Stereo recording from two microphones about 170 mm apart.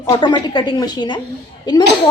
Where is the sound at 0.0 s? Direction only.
25° left (ahead or behind).